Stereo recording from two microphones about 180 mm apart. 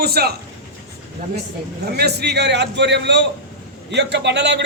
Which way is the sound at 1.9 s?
65° right (ahead or behind).